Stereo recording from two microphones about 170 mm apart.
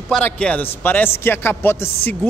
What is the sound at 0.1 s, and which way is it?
A man's voice, 5° left (ahead or behind).